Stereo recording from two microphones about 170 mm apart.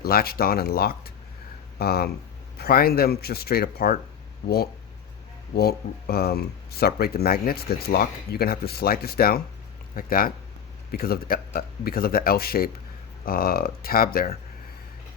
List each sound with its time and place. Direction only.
0.0 s speech: 65° left (ahead or behind)